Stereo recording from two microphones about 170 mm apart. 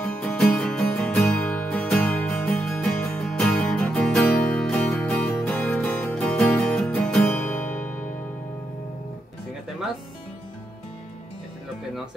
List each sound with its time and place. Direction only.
0.0 s music: 5° left (ahead or behind)